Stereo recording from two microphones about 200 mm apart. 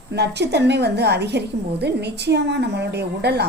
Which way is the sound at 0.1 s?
55° right (ahead or behind).